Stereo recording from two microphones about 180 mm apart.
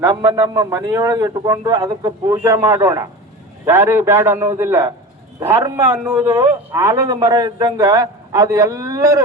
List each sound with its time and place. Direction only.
0.2 s a man's voice: 15° right (ahead or behind)
6.2 s a man's voice: 20° right (ahead or behind)